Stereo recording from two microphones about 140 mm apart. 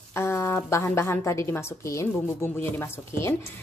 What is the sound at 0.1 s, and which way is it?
A woman's voice, 20° left (ahead or behind).